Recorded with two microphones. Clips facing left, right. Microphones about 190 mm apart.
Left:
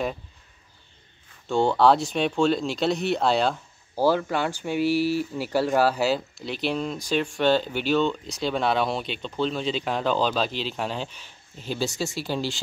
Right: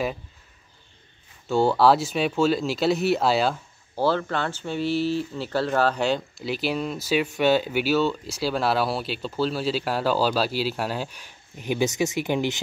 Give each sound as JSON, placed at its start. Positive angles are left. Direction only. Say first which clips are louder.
{"t": 1.5, "sound": "speech", "louder": "right 1 dB", "side_deg": -5}
{"t": 3.9, "sound": "speech", "louder": "left 1 dB", "side_deg": 10}